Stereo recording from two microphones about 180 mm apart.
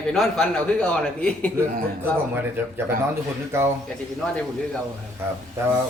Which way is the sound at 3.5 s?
15° right (ahead or behind).